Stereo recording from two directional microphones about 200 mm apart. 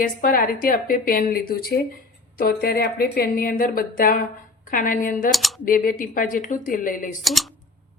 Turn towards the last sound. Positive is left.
turn(degrees=0)  # may be behind; listen again after turning